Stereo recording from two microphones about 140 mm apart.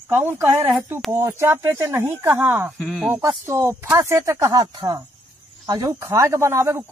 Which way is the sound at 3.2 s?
20° right (ahead or behind).